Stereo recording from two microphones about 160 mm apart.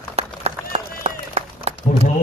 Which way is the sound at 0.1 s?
40° right (ahead or behind).